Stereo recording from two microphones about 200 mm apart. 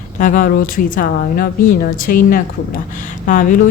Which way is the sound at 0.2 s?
40° left (ahead or behind).